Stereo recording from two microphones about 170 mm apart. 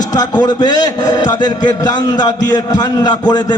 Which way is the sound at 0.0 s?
20° left (ahead or behind).